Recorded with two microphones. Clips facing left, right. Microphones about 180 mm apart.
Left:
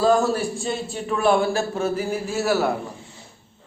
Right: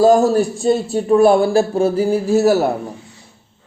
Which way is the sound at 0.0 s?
40° right (ahead or behind).